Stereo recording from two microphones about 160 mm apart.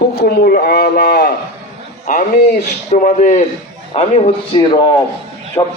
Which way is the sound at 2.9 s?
55° left (ahead or behind).